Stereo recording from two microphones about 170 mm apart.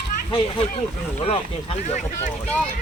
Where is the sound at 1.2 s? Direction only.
35° left (ahead or behind).